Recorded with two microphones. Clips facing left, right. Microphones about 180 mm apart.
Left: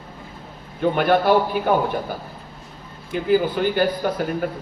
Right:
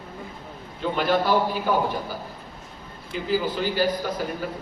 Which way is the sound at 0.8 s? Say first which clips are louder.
Left 5 dB; 60° left (ahead or behind).